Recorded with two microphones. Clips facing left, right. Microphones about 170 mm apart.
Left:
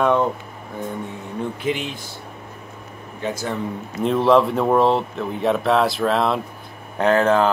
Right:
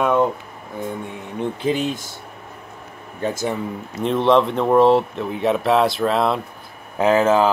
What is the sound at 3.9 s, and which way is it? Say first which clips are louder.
Speech: even; centre (ahead or behind).